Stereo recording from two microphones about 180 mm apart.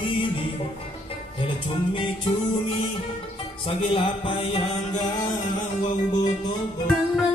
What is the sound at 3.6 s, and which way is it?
Music, 30° left (ahead or behind).